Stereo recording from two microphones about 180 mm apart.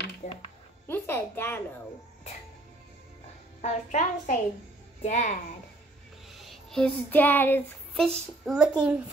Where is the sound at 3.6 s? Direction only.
40° left (ahead or behind).